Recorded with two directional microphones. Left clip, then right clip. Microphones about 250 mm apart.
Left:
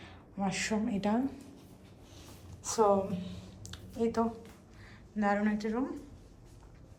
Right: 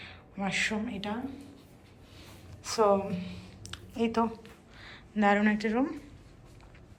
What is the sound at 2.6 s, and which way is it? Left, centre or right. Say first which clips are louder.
A woman's voice: right 2 dB; centre.